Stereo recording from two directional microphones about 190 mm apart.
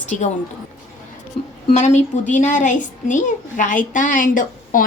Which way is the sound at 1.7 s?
35° left (ahead or behind).